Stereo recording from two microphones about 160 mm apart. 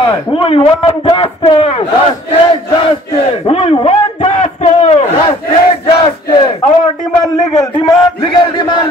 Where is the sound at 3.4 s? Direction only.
40° left (ahead or behind).